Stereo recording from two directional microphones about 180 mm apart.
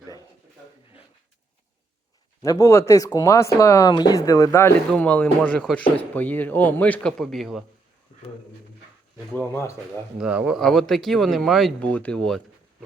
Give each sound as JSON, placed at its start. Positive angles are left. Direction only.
{"t": 2.4, "sound": "speech", "side_deg": 20}
{"t": 9.3, "sound": "speech", "side_deg": 15}
{"t": 10.2, "sound": "speech", "side_deg": -5}